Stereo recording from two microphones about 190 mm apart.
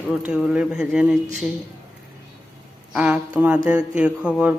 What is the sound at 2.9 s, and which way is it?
Speech, 5° right (ahead or behind).